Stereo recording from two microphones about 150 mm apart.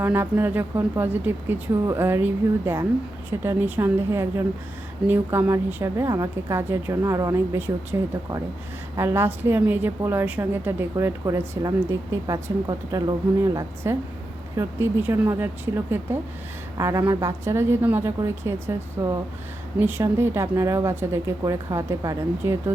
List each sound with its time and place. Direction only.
0.0 s a woman's voice: 15° right (ahead or behind)